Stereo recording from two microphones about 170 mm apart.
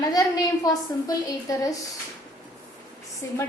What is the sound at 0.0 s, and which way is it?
A woman's voice, 20° left (ahead or behind).